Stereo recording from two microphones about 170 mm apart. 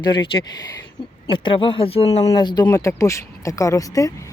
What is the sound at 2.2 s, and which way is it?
Speech, 25° left (ahead or behind).